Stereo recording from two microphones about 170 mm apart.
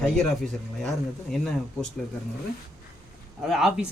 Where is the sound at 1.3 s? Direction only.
5° left (ahead or behind).